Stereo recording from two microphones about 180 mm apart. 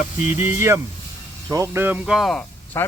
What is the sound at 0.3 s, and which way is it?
Speech, 15° right (ahead or behind).